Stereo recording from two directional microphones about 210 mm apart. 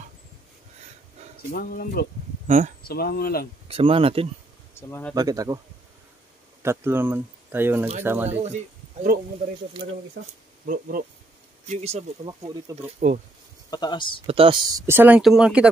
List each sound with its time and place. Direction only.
1.5 s speech: 45° left (ahead or behind)
2.4 s speech: 35° right (ahead or behind)
2.9 s speech: 45° left (ahead or behind)
3.6 s speech: 25° right (ahead or behind)
4.7 s speech: 10° left (ahead or behind)
5.1 s speech: 15° right (ahead or behind)
6.6 s speech: 10° right (ahead or behind)
8.3 s speech: 30° right (ahead or behind)
10.7 s speech: 40° right (ahead or behind)
12.4 s speech: 15° right (ahead or behind)
13.7 s speech: 20° left (ahead or behind)
14.2 s speech: 25° right (ahead or behind); by 15.7 s 5° right (ahead or behind)